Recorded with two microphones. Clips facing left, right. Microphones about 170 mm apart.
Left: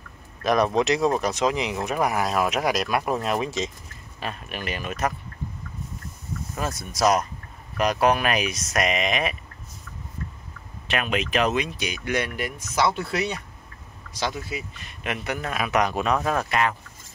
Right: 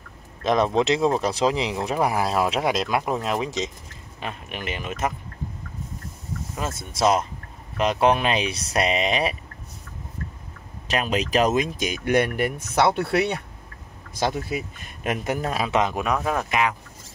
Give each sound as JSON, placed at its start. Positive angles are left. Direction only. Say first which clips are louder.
{"t": 0.4, "sound": "speech", "louder": "right 1 dB", "side_deg": -25}
{"t": 6.5, "sound": "speech", "louder": "left 1 dB", "side_deg": -25}
{"t": 10.9, "sound": "speech", "louder": "right 2 dB", "side_deg": -35}
{"t": 14.2, "sound": "speech", "louder": "right 4 dB", "side_deg": -50}
{"t": 15.6, "sound": "speech", "louder": "left 1 dB", "side_deg": -25}
{"t": 16.0, "sound": "speech", "louder": "left 1 dB", "side_deg": -10}